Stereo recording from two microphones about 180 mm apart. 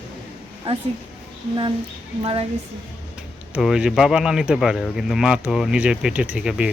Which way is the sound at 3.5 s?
5° right (ahead or behind).